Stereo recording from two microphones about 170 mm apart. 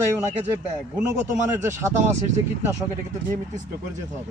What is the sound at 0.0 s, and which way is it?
Speech, 15° right (ahead or behind).